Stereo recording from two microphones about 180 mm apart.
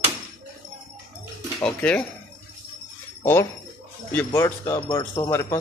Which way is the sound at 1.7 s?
5° left (ahead or behind).